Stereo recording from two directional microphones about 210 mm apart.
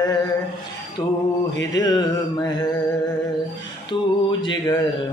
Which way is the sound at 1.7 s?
20° left (ahead or behind).